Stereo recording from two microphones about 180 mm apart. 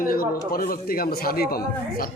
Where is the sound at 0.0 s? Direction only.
55° left (ahead or behind).